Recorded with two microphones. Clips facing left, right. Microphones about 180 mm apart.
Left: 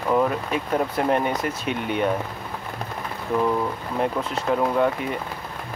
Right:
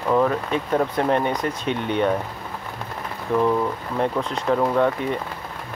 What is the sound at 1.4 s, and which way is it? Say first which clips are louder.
Speech: right 2 dB; 30° right (ahead or behind).